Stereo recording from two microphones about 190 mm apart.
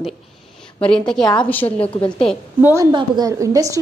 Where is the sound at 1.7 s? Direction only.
30° left (ahead or behind).